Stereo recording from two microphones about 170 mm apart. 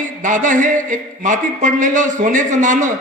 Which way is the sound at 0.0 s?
50° right (ahead or behind).